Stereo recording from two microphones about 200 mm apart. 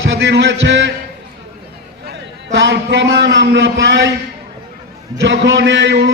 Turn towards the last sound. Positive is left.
turn(degrees=-60)  # may be behind; listen again after turning